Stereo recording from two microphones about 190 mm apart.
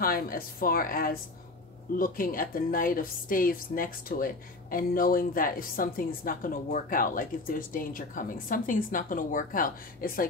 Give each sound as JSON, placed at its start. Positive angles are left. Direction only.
{"t": 0.0, "sound": "speech", "side_deg": 50}